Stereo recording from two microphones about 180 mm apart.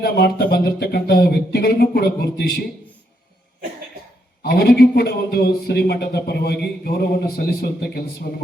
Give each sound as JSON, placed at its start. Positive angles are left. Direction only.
{"t": 0.0, "sound": "speech", "side_deg": 55}
{"t": 4.4, "sound": "speech", "side_deg": 60}